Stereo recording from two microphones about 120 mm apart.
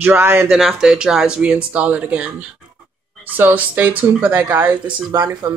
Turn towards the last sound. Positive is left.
turn(degrees=-35)  # may be behind; listen again after turning